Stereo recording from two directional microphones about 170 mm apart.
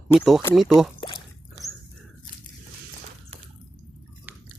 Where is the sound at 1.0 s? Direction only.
30° left (ahead or behind).